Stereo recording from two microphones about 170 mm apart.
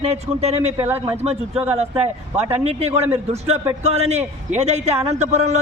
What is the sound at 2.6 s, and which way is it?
Speech, 40° right (ahead or behind).